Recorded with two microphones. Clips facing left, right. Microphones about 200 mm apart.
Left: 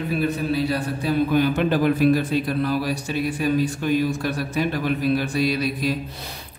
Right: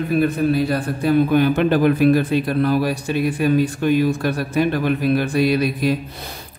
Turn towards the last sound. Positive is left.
turn(degrees=-55)  # may be behind; listen again after turning